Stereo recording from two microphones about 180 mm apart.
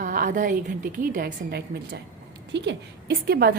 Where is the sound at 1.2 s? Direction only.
65° right (ahead or behind).